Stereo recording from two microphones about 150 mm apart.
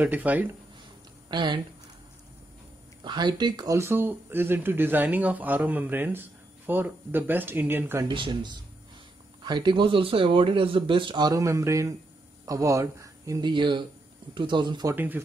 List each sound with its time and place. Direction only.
0.0 s speech: 10° right (ahead or behind)
1.3 s speech: 30° right (ahead or behind)
3.0 s speech: 30° right (ahead or behind)
3.7 s speech: 15° right (ahead or behind)
8.1 s speech: 30° right (ahead or behind)
15.0 s speech: 10° right (ahead or behind)